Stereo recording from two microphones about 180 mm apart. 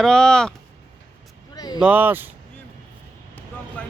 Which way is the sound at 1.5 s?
20° left (ahead or behind).